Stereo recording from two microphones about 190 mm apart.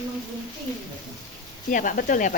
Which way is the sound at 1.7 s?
45° left (ahead or behind).